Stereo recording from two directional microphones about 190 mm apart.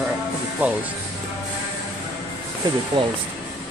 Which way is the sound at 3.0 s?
25° right (ahead or behind).